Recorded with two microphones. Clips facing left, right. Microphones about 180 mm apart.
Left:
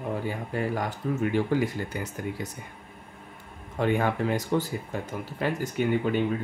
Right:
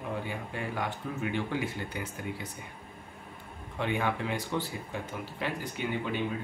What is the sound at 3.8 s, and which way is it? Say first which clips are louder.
Speech: left 6 dB; 45° left (ahead or behind).